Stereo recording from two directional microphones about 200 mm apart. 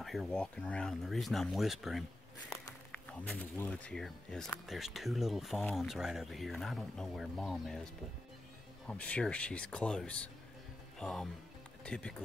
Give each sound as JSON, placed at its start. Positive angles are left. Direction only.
{"t": 0.0, "sound": "speech", "side_deg": 0}
{"t": 3.1, "sound": "speech", "side_deg": 5}